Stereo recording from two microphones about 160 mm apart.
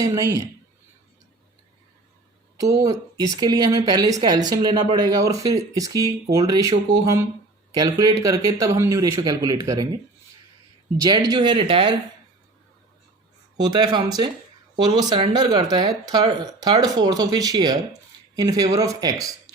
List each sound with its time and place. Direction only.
0.0 s a woman's voice: 20° right (ahead or behind)
2.8 s a woman's voice: 20° right (ahead or behind)
13.6 s a woman's voice: 25° right (ahead or behind)